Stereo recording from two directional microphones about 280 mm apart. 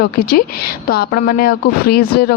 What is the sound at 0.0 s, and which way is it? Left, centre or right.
Speech, left.